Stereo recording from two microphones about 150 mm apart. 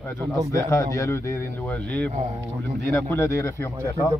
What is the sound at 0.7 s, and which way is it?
Speech, 20° left (ahead or behind).